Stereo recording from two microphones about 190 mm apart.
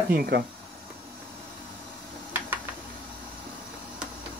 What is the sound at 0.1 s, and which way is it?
Speech, 55° right (ahead or behind).